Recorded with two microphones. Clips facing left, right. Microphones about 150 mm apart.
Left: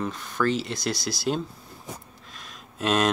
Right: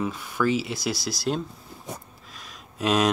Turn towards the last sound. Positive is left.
turn(degrees=0)  # may be behind; listen again after turning